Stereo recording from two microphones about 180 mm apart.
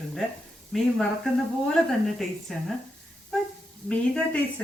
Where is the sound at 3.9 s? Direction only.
5° left (ahead or behind).